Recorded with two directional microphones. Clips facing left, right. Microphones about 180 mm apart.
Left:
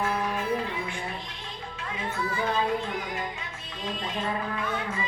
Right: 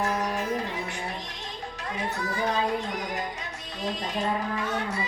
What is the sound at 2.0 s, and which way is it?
Music, 40° right (ahead or behind).